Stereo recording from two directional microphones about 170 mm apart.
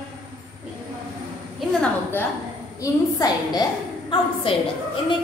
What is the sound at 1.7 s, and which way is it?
A woman's voice, 10° left (ahead or behind).